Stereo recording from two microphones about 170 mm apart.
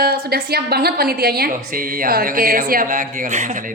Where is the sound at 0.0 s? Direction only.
65° right (ahead or behind).